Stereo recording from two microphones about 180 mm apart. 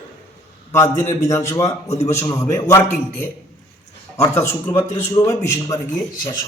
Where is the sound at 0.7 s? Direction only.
15° left (ahead or behind).